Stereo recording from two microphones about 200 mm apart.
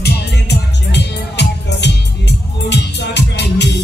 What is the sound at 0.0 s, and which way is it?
Music, 60° left (ahead or behind).